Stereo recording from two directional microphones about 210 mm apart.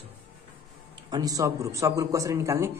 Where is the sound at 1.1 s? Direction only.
15° right (ahead or behind).